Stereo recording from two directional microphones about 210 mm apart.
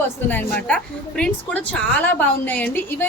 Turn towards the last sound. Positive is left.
turn(degrees=10)  # may be behind; listen again after turning